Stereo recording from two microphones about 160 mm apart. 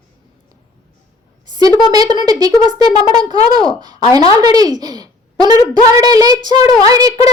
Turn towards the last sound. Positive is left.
turn(degrees=-25)  # may be behind; listen again after turning